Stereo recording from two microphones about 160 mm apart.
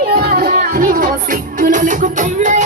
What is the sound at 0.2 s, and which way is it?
Music, 65° right (ahead or behind).